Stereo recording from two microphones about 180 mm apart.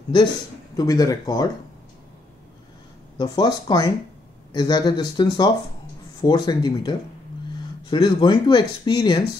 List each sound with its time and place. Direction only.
0.7 s speech: 20° left (ahead or behind)
3.2 s speech: 25° left (ahead or behind)